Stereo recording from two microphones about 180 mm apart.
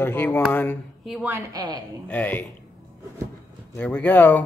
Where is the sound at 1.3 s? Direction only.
20° right (ahead or behind).